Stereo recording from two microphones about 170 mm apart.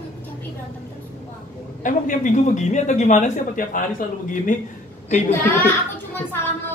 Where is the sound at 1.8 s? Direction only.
50° left (ahead or behind).